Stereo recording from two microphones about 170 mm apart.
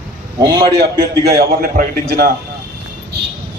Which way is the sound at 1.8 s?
60° right (ahead or behind).